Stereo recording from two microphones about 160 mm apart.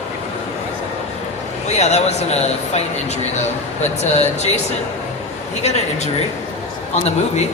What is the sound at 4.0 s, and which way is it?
Speech, 45° left (ahead or behind).